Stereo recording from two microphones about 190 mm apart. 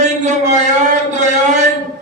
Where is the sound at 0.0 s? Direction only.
40° right (ahead or behind).